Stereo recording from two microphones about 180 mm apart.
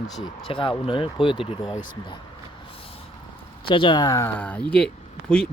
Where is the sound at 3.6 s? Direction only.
30° left (ahead or behind); by 5.4 s 5° left (ahead or behind).